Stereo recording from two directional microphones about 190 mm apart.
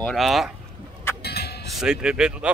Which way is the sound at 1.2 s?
55° left (ahead or behind).